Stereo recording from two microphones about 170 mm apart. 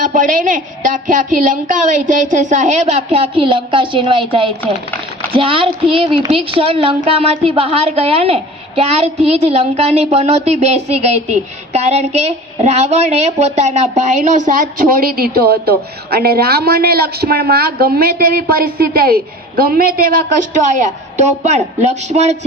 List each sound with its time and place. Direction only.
0.0 s a woman's voice: 50° right (ahead or behind)
21.2 s a woman's voice: 40° right (ahead or behind)